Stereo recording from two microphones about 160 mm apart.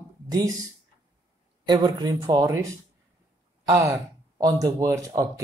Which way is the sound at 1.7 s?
25° right (ahead or behind).